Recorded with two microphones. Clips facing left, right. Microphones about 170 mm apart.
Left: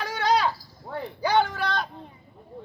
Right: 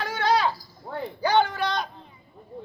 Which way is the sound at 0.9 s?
5° left (ahead or behind).